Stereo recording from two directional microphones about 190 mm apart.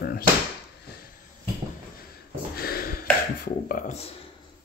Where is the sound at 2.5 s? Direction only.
55° left (ahead or behind); by 4.1 s 35° left (ahead or behind).